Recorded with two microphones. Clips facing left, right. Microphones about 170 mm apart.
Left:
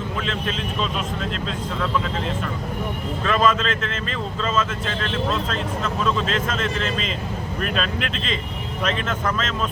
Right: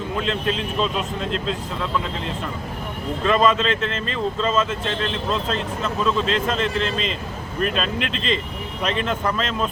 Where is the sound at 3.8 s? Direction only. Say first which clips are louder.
Right 4 dB; 35° right (ahead or behind).